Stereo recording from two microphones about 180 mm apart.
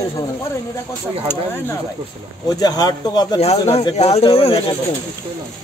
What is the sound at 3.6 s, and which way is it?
Speech, 35° left (ahead or behind).